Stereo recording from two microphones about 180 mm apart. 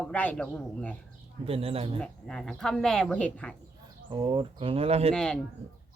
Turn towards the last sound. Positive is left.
turn(degrees=5)  # may be behind; listen again after turning